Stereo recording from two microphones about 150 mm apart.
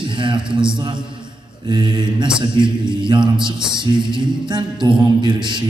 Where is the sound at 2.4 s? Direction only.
30° right (ahead or behind).